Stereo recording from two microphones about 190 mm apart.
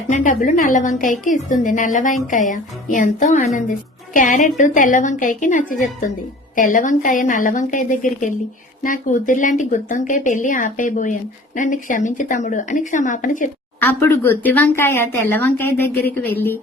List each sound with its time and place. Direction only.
0.1 s speech: 45° left (ahead or behind)
13.7 s speech: 10° left (ahead or behind)